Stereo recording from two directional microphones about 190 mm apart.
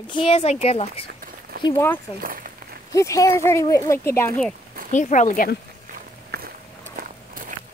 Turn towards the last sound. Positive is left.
turn(degrees=-55)  # may be behind; listen again after turning